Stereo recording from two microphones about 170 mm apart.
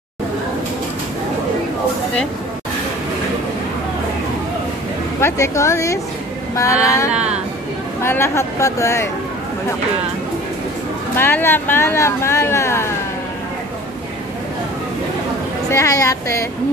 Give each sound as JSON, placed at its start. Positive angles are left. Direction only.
{"t": 5.2, "sound": "speech", "side_deg": 15}
{"t": 11.1, "sound": "speech", "side_deg": 10}
{"t": 15.7, "sound": "speech", "side_deg": 20}